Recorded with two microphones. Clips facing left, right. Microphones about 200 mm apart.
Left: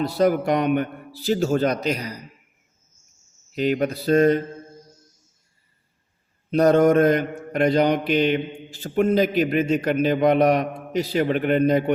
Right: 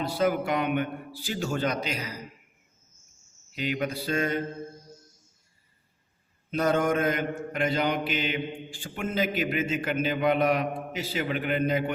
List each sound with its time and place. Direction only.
0.2 s a man's voice: 40° left (ahead or behind)
3.5 s a man's voice: 45° left (ahead or behind)
6.5 s a man's voice: 40° left (ahead or behind)